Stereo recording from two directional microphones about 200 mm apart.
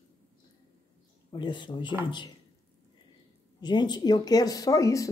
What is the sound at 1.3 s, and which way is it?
Speech, 25° left (ahead or behind).